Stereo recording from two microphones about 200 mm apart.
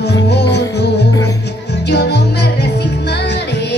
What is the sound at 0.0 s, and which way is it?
Music, 55° left (ahead or behind).